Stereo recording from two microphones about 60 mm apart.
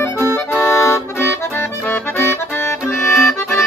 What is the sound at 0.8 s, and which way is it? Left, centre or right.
Accordion, left.